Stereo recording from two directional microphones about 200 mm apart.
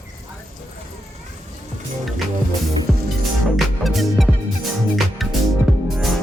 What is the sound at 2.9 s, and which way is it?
Music, centre (ahead or behind).